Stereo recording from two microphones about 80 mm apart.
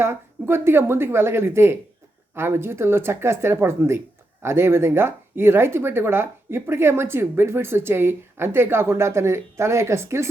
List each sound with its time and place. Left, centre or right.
0.0 s speech: right